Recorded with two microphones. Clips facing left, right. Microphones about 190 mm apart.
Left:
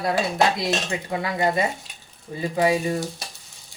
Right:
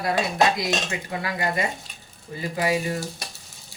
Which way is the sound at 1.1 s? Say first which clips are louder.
Left 5 dB; 25° left (ahead or behind).